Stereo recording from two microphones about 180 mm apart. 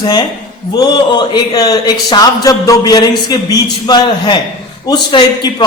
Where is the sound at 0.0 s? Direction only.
20° left (ahead or behind).